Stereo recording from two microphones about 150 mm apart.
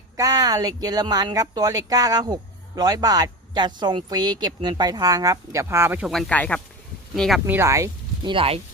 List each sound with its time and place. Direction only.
0.2 s speech: 25° right (ahead or behind)
6.1 s speech: 5° left (ahead or behind)
7.4 s speech: 15° right (ahead or behind)
8.3 s speech: 40° right (ahead or behind)